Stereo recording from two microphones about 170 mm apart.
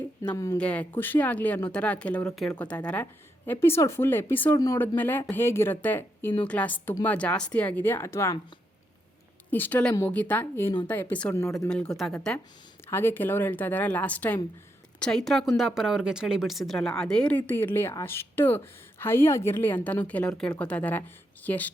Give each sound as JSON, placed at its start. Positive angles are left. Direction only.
{"t": 0.3, "sound": "speech", "side_deg": 20}
{"t": 0.6, "sound": "speech", "side_deg": 10}
{"t": 9.5, "sound": "speech", "side_deg": 10}
{"t": 12.9, "sound": "speech", "side_deg": 15}